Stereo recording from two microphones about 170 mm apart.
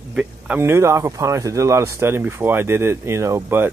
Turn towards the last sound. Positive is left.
turn(degrees=-15)  # may be behind; listen again after turning